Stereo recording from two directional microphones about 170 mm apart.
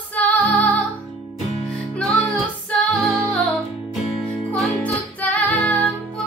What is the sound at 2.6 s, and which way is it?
Music, centre (ahead or behind).